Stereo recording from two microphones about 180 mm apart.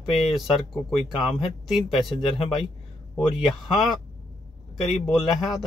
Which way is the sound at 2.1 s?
30° left (ahead or behind).